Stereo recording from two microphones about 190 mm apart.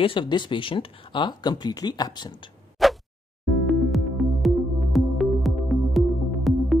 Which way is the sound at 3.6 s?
Centre (ahead or behind).